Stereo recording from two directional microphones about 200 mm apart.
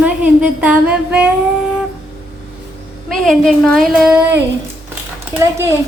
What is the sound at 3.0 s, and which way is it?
Speech, centre (ahead or behind).